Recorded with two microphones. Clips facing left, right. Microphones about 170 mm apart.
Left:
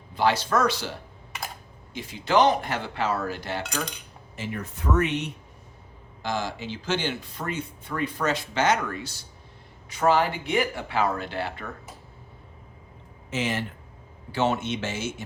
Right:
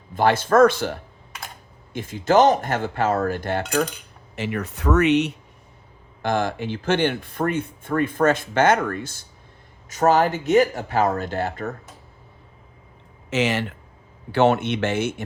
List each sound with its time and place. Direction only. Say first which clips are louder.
0.1 s speech: right 5 dB; 50° right (ahead or behind)
4.4 s speech: right 6 dB; 75° right (ahead or behind)
6.2 s speech: right 7 dB; 55° right (ahead or behind)
13.3 s speech: right 6 dB; 80° right
14.3 s speech: right 7 dB; 65° right (ahead or behind)